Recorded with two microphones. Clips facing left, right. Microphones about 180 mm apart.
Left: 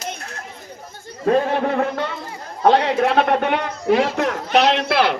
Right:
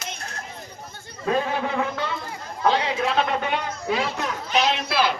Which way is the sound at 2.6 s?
65° left (ahead or behind).